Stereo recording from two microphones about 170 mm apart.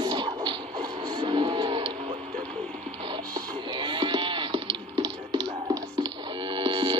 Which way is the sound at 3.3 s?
25° right (ahead or behind).